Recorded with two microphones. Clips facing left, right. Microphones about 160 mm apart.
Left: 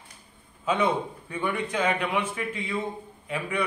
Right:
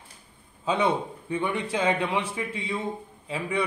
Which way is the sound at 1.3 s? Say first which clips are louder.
Right 1 dB; 25° right (ahead or behind).